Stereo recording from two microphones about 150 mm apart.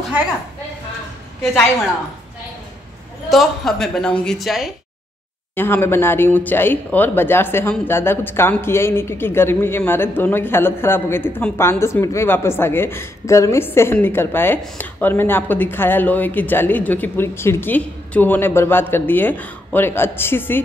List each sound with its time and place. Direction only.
3.3 s a woman's voice: centre (ahead or behind)
5.6 s a woman's voice: 15° left (ahead or behind)